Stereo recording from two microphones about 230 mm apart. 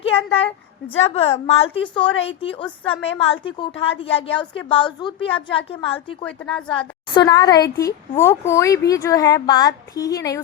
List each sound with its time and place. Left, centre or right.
0.0 s a woman's voice: left
6.2 s speech: centre
6.7 s a woman's voice: centre